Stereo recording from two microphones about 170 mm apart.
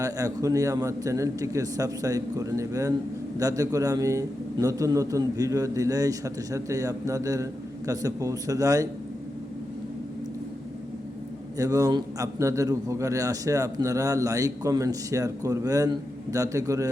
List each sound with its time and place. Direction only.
0.0 s a man's voice: 20° right (ahead or behind)
11.5 s a man's voice: 20° right (ahead or behind)